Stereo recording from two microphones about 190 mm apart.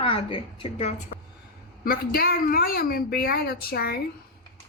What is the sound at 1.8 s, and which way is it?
A woman's voice, 50° left (ahead or behind).